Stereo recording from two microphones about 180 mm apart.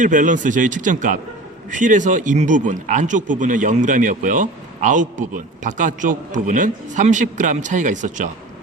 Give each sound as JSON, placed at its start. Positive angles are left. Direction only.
{"t": 0.0, "sound": "speech", "side_deg": -45}